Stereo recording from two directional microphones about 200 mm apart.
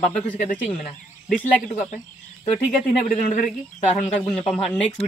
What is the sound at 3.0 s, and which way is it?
Speech, 45° left (ahead or behind).